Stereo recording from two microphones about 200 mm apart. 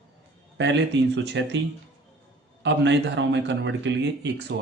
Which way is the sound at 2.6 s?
60° right (ahead or behind).